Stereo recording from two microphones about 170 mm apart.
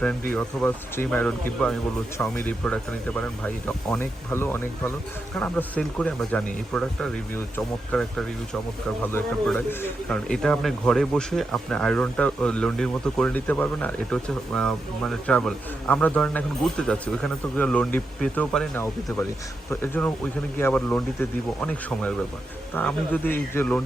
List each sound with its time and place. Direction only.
0.3 s speech: 10° left (ahead or behind)
9.1 s a man's voice: 10° left (ahead or behind)